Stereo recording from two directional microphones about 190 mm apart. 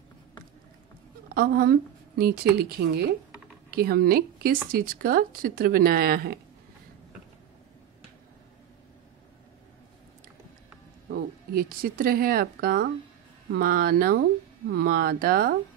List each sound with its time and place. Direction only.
1.3 s a woman's voice: 55° right (ahead or behind)
11.1 s speech: 50° right (ahead or behind)